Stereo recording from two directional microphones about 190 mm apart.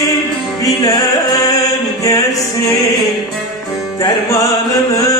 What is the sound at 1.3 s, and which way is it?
Music, 20° left (ahead or behind).